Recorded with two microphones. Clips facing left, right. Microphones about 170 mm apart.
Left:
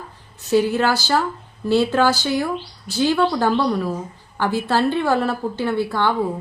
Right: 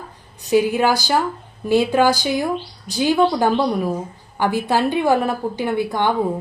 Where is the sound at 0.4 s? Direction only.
15° right (ahead or behind).